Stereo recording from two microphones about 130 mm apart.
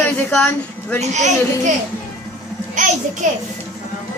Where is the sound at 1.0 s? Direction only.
65° right (ahead or behind).